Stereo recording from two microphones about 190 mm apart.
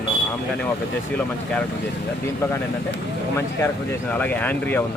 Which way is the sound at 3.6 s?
10° left (ahead or behind).